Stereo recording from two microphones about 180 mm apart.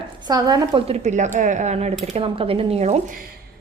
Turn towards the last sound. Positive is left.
turn(degrees=-35)  # may be behind; listen again after turning